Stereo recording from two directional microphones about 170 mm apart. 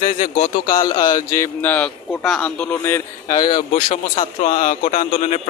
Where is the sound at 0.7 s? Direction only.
25° left (ahead or behind).